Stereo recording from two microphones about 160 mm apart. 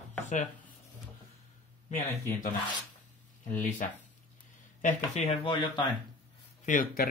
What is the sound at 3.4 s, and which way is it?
Speech, 55° left (ahead or behind).